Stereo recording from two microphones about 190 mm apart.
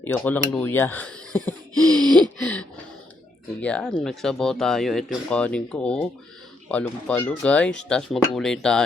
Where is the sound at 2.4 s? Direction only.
5° left (ahead or behind).